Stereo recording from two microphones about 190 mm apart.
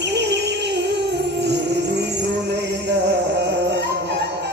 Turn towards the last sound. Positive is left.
turn(degrees=-65)  # may be behind; listen again after turning